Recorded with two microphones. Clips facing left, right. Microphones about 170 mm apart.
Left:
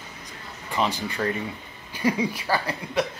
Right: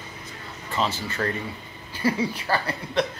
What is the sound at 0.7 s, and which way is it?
Speech, 15° left (ahead or behind).